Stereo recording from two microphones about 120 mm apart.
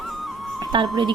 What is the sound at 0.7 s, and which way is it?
Speech, 45° right (ahead or behind).